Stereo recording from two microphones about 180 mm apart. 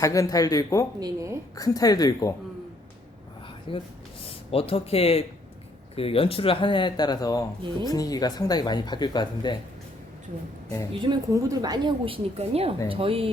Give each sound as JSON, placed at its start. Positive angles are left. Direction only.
{"t": 0.0, "sound": "speech", "side_deg": 20}
{"t": 0.9, "sound": "a woman's voice", "side_deg": -20}
{"t": 1.5, "sound": "speech", "side_deg": 20}
{"t": 3.7, "sound": "speech", "side_deg": 30}
{"t": 11.0, "sound": "a woman's voice", "side_deg": -20}